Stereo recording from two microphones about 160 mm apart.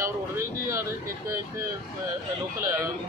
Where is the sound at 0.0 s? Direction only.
20° right (ahead or behind).